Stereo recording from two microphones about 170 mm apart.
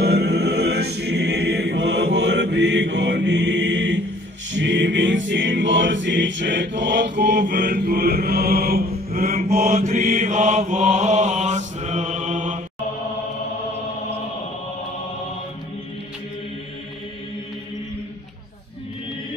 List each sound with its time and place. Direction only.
0.0 s choir: 75° right (ahead or behind); by 4.0 s 90° right
4.5 s music: 90° right; by 12.5 s 45° right (ahead or behind)